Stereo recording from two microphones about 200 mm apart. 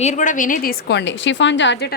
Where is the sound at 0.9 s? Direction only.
65° left (ahead or behind).